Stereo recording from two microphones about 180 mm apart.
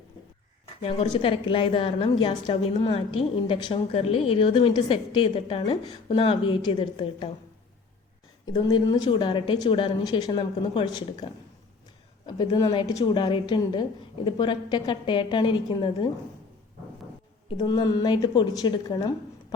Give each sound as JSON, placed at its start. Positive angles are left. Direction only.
{"t": 0.8, "sound": "a woman's voice", "side_deg": 30}
{"t": 8.5, "sound": "a woman's voice", "side_deg": 25}
{"t": 17.6, "sound": "a woman's voice", "side_deg": 20}